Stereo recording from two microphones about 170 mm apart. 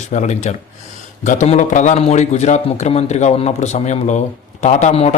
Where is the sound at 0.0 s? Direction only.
45° left (ahead or behind).